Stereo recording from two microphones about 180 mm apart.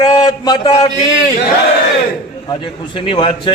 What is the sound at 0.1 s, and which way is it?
Speech, 20° left (ahead or behind).